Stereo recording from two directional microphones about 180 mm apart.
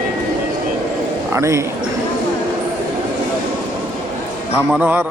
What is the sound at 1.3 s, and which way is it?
Speech, 15° right (ahead or behind).